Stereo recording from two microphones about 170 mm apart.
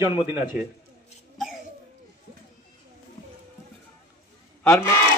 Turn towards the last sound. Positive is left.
turn(degrees=5)  # may be behind; listen again after turning